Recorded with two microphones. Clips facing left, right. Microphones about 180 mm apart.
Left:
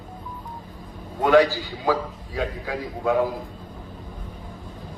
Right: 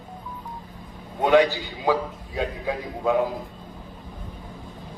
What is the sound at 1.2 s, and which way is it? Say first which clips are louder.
A man's voice: left 1 dB; 20° right (ahead or behind).